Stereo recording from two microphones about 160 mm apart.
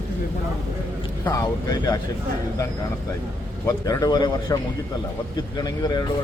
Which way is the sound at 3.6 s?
20° left (ahead or behind).